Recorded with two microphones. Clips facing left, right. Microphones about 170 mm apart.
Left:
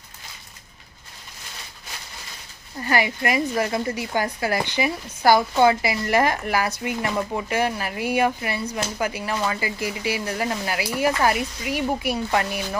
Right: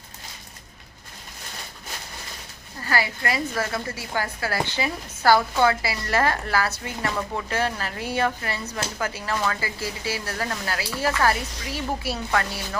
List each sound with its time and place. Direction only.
2.8 s a woman's voice: 20° left (ahead or behind)